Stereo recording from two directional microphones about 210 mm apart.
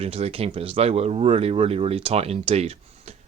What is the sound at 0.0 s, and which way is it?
Speech, 30° right (ahead or behind).